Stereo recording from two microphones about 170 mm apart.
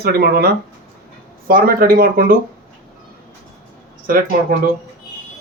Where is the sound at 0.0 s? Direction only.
70° right (ahead or behind).